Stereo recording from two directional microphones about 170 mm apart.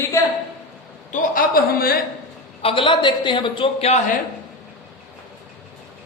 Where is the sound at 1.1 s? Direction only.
55° left (ahead or behind).